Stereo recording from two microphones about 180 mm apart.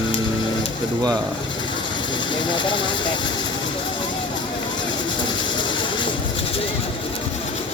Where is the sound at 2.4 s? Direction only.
25° left (ahead or behind).